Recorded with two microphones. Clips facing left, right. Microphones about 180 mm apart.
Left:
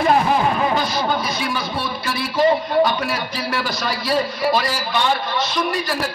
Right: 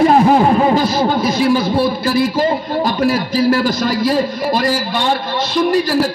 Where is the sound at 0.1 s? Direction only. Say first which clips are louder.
Right 7 dB; 40° right (ahead or behind).